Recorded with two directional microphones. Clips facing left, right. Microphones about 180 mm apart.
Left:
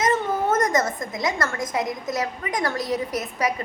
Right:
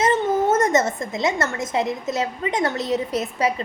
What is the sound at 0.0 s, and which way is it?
A woman's voice, 25° right (ahead or behind).